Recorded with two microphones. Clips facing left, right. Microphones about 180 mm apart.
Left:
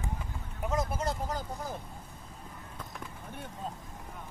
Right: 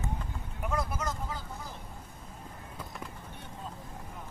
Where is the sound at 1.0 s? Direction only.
40° left (ahead or behind).